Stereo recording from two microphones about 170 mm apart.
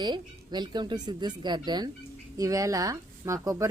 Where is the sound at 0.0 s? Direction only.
25° right (ahead or behind).